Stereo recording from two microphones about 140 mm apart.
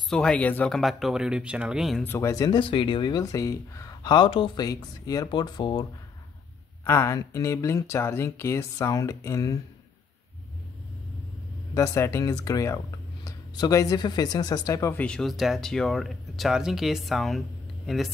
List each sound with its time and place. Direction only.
0.1 s speech: 5° left (ahead or behind)
2.0 s speech: 20° left (ahead or behind)
2.6 s speech: 35° left (ahead or behind)
4.6 s speech: 25° left (ahead or behind)
6.8 s speech: 15° left (ahead or behind)
11.7 s speech: 20° left (ahead or behind); by 18.1 s centre (ahead or behind)